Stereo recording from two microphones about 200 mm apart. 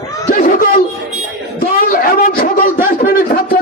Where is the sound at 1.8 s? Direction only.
45° left (ahead or behind).